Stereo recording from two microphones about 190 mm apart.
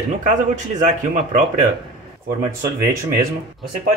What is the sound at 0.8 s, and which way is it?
Speech, 40° right (ahead or behind).